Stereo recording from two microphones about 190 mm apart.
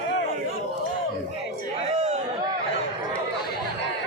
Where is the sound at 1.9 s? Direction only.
35° right (ahead or behind).